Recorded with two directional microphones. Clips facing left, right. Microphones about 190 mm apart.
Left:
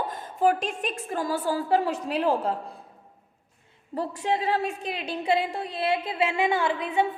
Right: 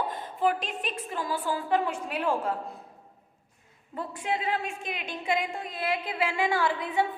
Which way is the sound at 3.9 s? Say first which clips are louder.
Left 4 dB; 35° left (ahead or behind).